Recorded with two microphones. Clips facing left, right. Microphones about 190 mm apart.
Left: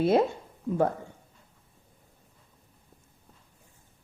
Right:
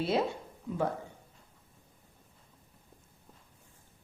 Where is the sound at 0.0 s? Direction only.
50° left (ahead or behind).